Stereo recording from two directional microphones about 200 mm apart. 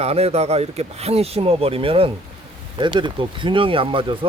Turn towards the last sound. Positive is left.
turn(degrees=-25)  # may be behind; listen again after turning